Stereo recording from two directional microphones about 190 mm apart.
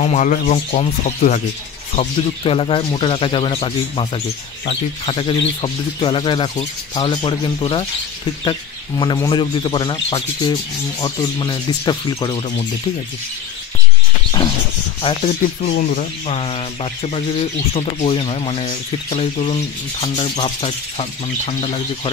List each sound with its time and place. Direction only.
0.0 s speech: 40° left (ahead or behind)
2.0 s a man's voice: 30° left (ahead or behind)
15.0 s speech: 30° left (ahead or behind)